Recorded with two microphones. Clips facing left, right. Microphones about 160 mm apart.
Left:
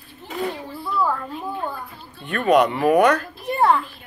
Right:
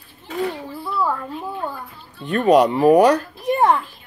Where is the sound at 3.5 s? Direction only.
15° right (ahead or behind).